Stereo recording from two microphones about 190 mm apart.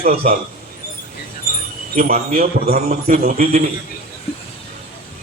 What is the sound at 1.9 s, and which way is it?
A man's voice, 50° right (ahead or behind).